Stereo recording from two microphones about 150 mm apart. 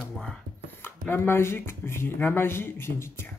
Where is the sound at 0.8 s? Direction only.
15° left (ahead or behind).